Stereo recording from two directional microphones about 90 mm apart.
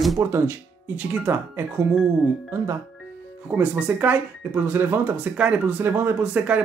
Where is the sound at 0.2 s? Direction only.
30° right (ahead or behind).